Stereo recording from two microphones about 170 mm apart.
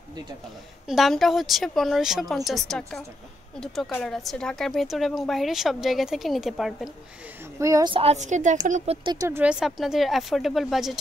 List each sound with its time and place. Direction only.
0.8 s speech: centre (ahead or behind)
7.5 s speech: 20° right (ahead or behind)
7.9 s a woman's voice: 35° right (ahead or behind)
9.0 s speech: 20° right (ahead or behind)
9.4 s speech: 5° right (ahead or behind)